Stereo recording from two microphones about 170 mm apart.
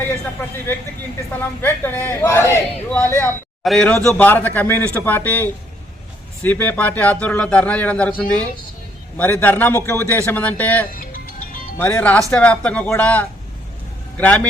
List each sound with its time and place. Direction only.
1.3 s speech: 10° left (ahead or behind)
11.0 s music: 55° left (ahead or behind)
11.8 s speech: 10° left (ahead or behind)